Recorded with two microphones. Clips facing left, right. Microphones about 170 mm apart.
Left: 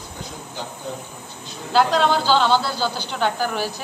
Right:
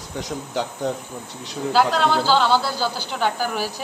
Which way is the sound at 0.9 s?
75° right (ahead or behind).